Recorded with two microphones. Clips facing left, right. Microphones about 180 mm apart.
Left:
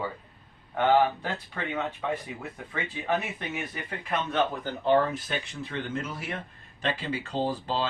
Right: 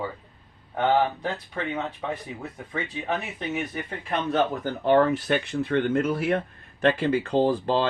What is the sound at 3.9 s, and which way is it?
Speech, 25° right (ahead or behind).